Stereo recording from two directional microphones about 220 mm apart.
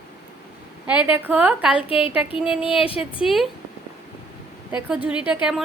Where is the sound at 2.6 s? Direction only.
25° left (ahead or behind).